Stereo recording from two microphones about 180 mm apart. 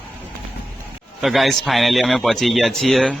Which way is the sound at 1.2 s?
Centre (ahead or behind).